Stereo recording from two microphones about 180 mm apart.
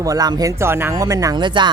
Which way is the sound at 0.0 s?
20° right (ahead or behind).